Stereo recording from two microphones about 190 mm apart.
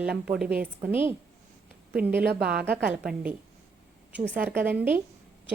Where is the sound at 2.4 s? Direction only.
55° right (ahead or behind).